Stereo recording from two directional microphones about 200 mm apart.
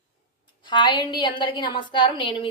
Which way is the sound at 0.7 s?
20° left (ahead or behind).